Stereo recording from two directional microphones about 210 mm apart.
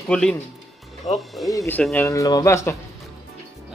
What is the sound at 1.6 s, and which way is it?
Speech, 5° left (ahead or behind).